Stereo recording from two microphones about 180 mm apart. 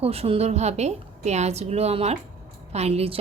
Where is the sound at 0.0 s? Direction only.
35° right (ahead or behind).